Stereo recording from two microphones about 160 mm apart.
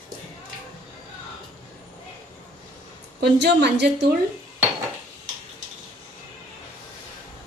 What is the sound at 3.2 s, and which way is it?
Speech, 90° right.